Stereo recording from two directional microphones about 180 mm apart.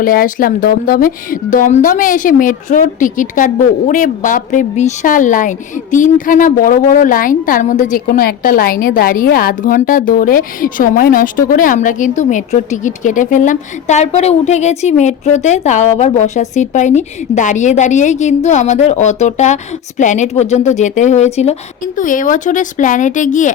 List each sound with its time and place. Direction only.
0.0 s a woman's voice: 50° left (ahead or behind)